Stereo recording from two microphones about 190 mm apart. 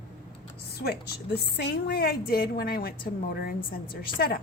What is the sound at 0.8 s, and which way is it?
A woman's voice, 55° left (ahead or behind).